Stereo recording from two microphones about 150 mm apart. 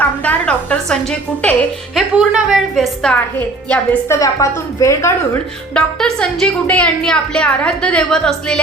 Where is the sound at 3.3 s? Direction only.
15° left (ahead or behind).